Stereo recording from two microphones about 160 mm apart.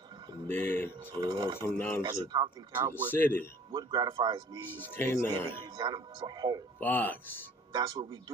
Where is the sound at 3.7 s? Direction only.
25° right (ahead or behind).